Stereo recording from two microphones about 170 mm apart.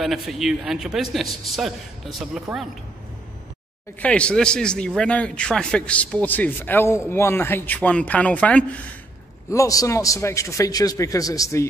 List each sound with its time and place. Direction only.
0.0 s speech: centre (ahead or behind)
4.0 s a man's voice: 5° left (ahead or behind)
9.5 s a man's voice: 20° left (ahead or behind)